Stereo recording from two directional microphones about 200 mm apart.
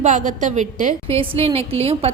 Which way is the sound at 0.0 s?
40° right (ahead or behind).